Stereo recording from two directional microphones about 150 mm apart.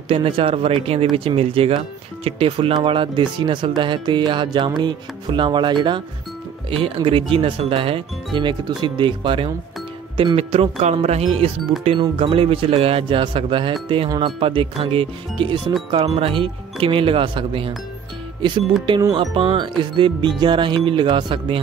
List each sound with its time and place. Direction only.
0.1 s speech: 40° right (ahead or behind)
18.9 s speech: 30° right (ahead or behind)